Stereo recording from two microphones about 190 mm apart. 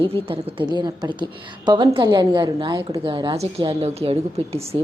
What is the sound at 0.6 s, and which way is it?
A woman's voice, 20° right (ahead or behind).